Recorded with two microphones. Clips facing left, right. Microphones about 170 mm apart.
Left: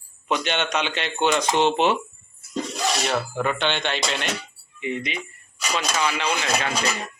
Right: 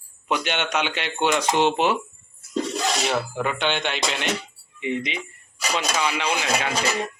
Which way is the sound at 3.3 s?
10° right (ahead or behind).